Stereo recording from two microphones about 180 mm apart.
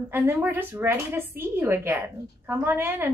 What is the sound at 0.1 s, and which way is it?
Speech, 10° right (ahead or behind).